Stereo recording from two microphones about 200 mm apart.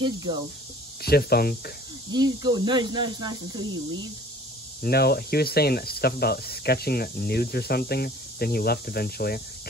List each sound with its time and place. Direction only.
0.0 s speech: 20° right (ahead or behind)
1.0 s speech: 50° left (ahead or behind)
2.1 s speech: 20° right (ahead or behind)
4.8 s speech: 50° left (ahead or behind)